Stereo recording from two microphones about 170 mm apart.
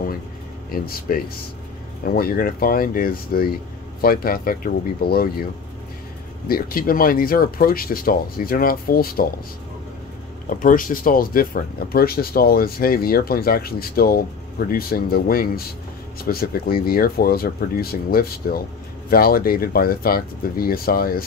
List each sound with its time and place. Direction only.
0.7 s speech: 60° left (ahead or behind)
6.4 s speech: 60° left (ahead or behind)
10.6 s speech: 55° left (ahead or behind)